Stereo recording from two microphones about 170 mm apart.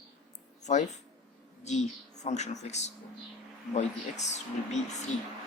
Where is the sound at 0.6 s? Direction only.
45° left (ahead or behind).